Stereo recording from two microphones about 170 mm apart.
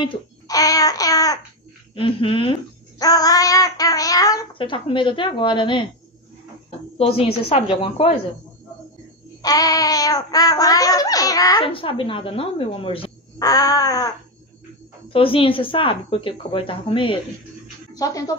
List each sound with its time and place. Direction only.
0.0 s babbling: 25° left (ahead or behind)
2.0 s speech: 30° left (ahead or behind)
3.0 s child singing: 20° left (ahead or behind)
7.0 s speech: 35° left (ahead or behind)
9.4 s a sound: 20° left (ahead or behind)
11.6 s speech: 30° left (ahead or behind)
13.4 s a sound: 20° left (ahead or behind)
15.1 s speech: 30° left (ahead or behind)
17.9 s a sound: 20° left (ahead or behind)